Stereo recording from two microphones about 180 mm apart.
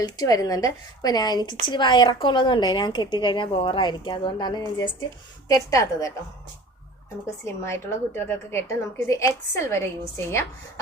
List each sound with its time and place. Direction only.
0.0 s a woman's voice: 20° left (ahead or behind)
7.4 s a woman's voice: 15° left (ahead or behind)